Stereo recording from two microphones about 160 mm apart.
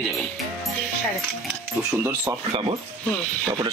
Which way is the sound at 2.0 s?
15° right (ahead or behind).